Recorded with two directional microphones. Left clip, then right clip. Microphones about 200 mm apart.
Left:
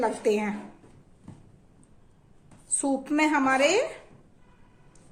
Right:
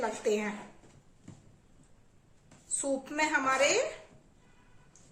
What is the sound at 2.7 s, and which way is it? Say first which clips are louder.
A woman's voice: left 6 dB; 45° left (ahead or behind).